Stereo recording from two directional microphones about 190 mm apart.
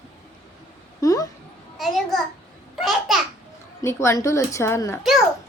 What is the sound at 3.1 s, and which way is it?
Babbling, centre (ahead or behind).